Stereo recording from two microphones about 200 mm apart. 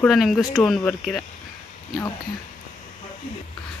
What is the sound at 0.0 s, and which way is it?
Speech, centre (ahead or behind).